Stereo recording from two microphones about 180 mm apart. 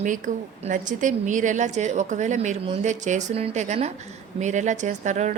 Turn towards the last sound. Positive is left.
turn(degrees=-40)  # may be behind; listen again after turning